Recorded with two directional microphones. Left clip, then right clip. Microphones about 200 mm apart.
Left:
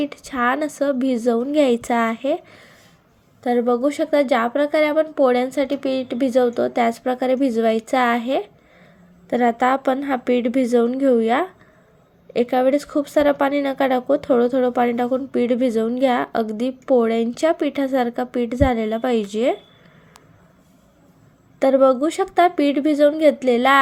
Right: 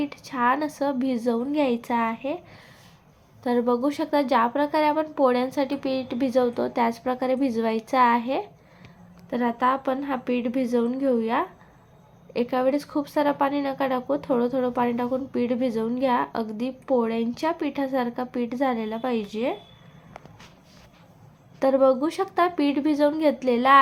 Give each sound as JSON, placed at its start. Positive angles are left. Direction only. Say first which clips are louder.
{"t": 0.0, "sound": "a woman's voice", "louder": "left 3 dB", "side_deg": 15}
{"t": 9.3, "sound": "speech", "louder": "left 6 dB", "side_deg": 25}
{"t": 21.6, "sound": "a woman's voice", "louder": "left 5 dB", "side_deg": 15}